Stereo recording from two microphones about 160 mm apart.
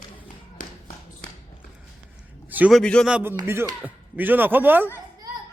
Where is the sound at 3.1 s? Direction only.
10° right (ahead or behind).